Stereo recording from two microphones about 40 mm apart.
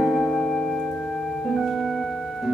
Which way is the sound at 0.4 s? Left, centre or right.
Centre.